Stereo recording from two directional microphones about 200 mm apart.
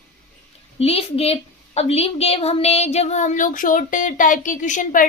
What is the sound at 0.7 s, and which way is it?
A woman's voice, 30° left (ahead or behind).